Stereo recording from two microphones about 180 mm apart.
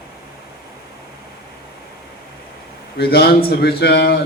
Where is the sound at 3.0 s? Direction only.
60° left (ahead or behind).